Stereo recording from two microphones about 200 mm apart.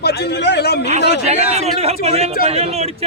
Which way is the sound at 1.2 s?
30° right (ahead or behind).